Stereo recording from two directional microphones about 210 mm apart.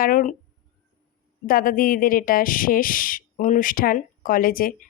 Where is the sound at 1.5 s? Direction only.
40° left (ahead or behind).